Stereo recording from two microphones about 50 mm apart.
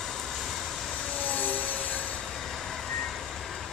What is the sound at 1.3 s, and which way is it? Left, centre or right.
Vehicle, left.